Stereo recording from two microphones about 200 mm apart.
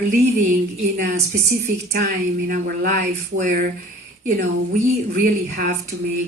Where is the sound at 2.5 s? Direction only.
45° right (ahead or behind).